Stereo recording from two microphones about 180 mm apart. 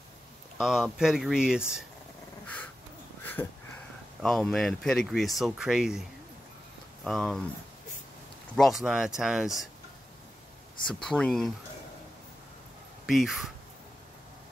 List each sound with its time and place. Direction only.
0.6 s speech: centre (ahead or behind)
2.4 s a sound: 10° left (ahead or behind)
3.4 s sniff: 20° left (ahead or behind)
4.2 s speech: centre (ahead or behind)
7.1 s speech: centre (ahead or behind)
8.5 s speech: centre (ahead or behind)
10.9 s speech: 5° left (ahead or behind)
13.0 s speech: centre (ahead or behind)